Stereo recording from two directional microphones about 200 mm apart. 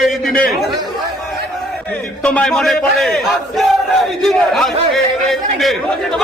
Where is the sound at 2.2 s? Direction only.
5° left (ahead or behind).